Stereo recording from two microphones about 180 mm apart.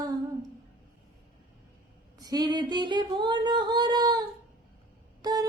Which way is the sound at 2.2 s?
20° right (ahead or behind).